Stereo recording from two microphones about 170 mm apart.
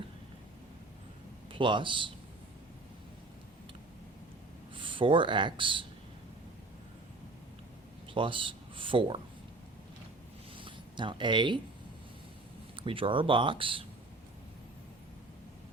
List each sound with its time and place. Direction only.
1.5 s a man's voice: 30° right (ahead or behind)
4.7 s speech: 30° right (ahead or behind)
8.1 s speech: 30° right (ahead or behind)
10.6 s speech: 30° right (ahead or behind)
12.7 s speech: 30° right (ahead or behind)